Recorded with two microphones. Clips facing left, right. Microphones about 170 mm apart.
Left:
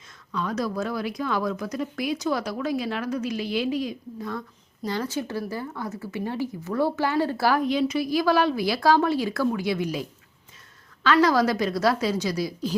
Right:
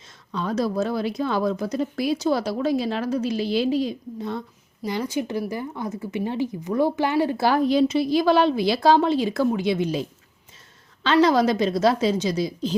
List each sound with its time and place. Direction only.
0.3 s speech: 30° right (ahead or behind)